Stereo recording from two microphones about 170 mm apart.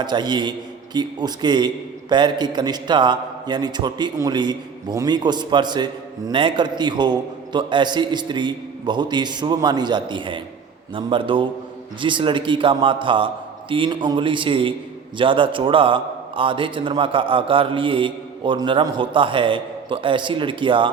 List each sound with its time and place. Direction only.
0.0 s a man's voice: 25° right (ahead or behind)